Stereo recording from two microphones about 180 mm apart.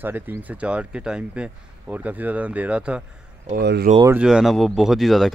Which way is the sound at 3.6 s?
65° right (ahead or behind).